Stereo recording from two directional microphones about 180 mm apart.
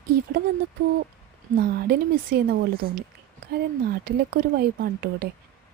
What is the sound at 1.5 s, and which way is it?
Speech, 55° right (ahead or behind).